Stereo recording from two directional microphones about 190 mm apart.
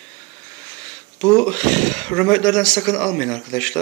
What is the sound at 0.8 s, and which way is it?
Speech, 5° left (ahead or behind).